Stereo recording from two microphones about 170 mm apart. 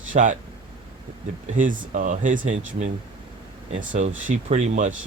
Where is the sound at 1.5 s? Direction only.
50° right (ahead or behind).